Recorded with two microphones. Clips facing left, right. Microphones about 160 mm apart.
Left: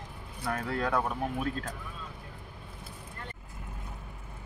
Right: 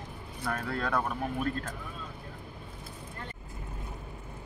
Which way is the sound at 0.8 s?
5° left (ahead or behind).